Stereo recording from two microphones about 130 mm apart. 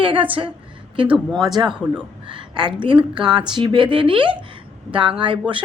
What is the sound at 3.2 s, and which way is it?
A woman's voice, 35° right (ahead or behind).